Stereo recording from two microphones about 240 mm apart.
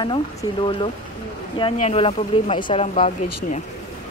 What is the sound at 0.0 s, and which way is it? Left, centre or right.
Speech, centre.